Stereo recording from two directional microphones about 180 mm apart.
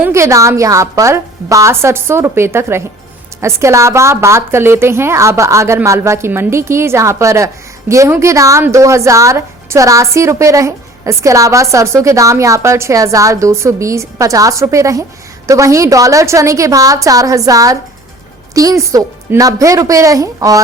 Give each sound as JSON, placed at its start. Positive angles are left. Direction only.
{"t": 0.0, "sound": "a woman's voice", "side_deg": -15}